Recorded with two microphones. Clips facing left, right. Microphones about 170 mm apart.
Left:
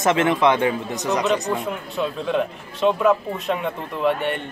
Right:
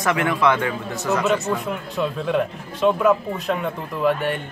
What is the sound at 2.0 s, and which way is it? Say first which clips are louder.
A man's voice: right 1 dB; centre (ahead or behind).